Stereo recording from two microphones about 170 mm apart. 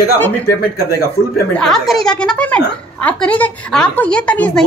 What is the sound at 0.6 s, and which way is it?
Speech, 65° left (ahead or behind).